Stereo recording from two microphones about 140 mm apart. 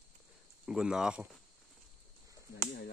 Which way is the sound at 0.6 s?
5° right (ahead or behind).